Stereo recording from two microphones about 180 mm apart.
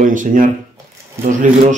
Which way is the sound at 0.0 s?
45° right (ahead or behind).